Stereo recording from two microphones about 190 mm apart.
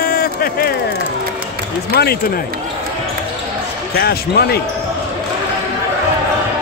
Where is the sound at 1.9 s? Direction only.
55° left (ahead or behind).